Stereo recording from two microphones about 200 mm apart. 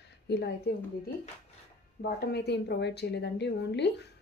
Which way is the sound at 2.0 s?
55° left (ahead or behind).